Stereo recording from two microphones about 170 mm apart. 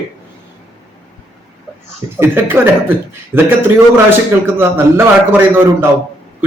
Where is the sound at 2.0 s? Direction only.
20° right (ahead or behind).